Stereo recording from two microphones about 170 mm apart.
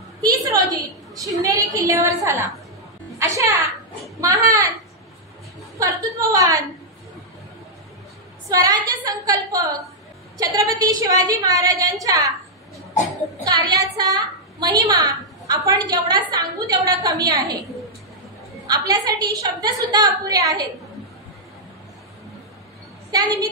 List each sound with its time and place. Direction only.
0.2 s a woman's voice: 20° right (ahead or behind)
5.8 s a woman's voice: 20° right (ahead or behind)
8.5 s a woman's voice: 20° right (ahead or behind)
14.0 s a woman's voice: 20° right (ahead or behind)
18.7 s a woman's voice: 25° right (ahead or behind)
23.1 s a woman's voice: 20° right (ahead or behind)